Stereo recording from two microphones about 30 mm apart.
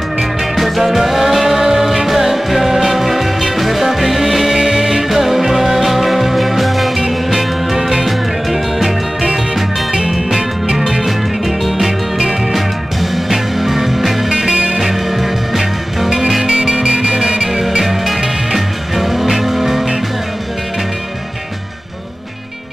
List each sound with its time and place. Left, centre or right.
0.6 s music: centre
4.6 s music: centre
10.9 s music: centre
14.3 s music: right
14.8 s music: centre
16.5 s music: right
17.5 s music: centre